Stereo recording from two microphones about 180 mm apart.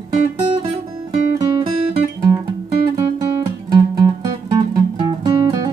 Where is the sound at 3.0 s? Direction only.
25° right (ahead or behind).